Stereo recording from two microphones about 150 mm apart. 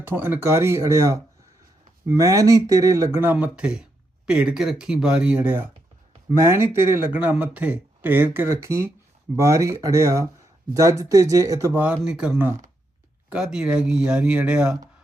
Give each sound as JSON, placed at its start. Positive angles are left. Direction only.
{"t": 0.0, "sound": "speech", "side_deg": -15}